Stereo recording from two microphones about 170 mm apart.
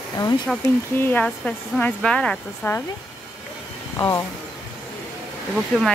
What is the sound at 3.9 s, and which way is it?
Speech, 15° left (ahead or behind).